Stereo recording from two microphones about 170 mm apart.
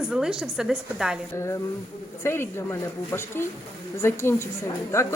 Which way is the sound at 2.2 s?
15° left (ahead or behind).